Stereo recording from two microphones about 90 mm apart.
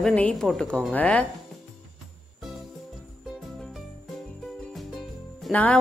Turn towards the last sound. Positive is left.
turn(degrees=15)  # may be behind; listen again after turning